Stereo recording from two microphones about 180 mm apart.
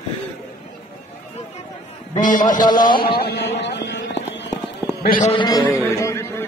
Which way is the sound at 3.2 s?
65° left (ahead or behind).